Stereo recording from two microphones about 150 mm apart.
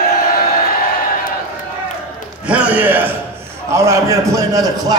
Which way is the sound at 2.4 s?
10° right (ahead or behind).